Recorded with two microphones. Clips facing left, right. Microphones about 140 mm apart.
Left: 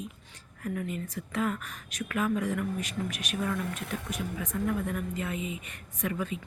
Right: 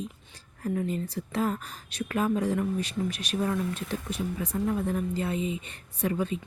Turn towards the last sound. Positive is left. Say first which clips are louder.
# right 4 dB
turn(degrees=-30)  # may be behind; listen again after turning